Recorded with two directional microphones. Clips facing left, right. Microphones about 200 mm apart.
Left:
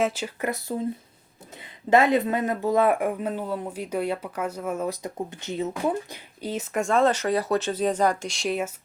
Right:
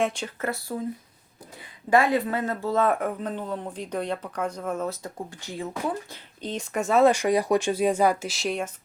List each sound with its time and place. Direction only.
0.0 s speech: 5° left (ahead or behind)
0.4 s speech: 20° left (ahead or behind)
1.9 s speech: 20° left (ahead or behind)
6.4 s speech: 5° left (ahead or behind)